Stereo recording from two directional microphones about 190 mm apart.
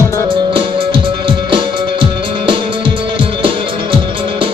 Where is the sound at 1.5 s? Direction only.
25° right (ahead or behind).